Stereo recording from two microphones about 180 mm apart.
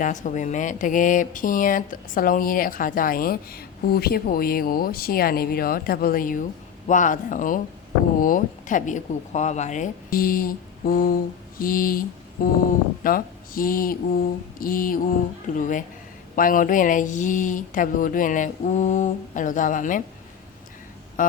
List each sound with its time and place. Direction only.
0.0 s speech: 45° left (ahead or behind)
21.2 s speech: 45° left (ahead or behind)